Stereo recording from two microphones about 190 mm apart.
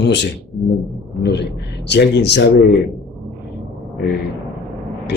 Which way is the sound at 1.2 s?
60° left (ahead or behind).